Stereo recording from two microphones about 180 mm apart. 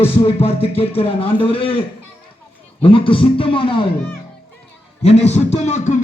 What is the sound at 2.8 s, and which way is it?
A man's voice, 30° left (ahead or behind).